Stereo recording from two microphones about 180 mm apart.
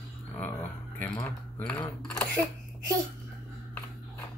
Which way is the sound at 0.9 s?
15° left (ahead or behind).